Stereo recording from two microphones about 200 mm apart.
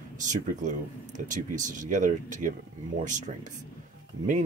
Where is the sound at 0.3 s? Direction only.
40° right (ahead or behind).